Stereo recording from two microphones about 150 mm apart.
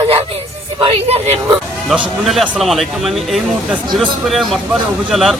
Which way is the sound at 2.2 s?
Centre (ahead or behind).